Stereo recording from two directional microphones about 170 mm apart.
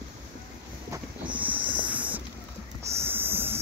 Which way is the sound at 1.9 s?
10° right (ahead or behind).